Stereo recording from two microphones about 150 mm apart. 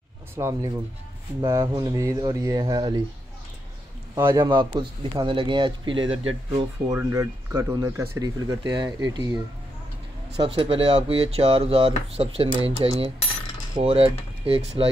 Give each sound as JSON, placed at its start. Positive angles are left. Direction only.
{"t": 0.4, "sound": "speech", "side_deg": -20}
{"t": 4.1, "sound": "a man's voice", "side_deg": -15}
{"t": 4.5, "sound": "speech", "side_deg": -30}
{"t": 6.9, "sound": "speech", "side_deg": -20}